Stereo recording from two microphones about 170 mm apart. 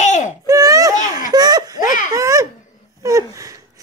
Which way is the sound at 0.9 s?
50° left (ahead or behind).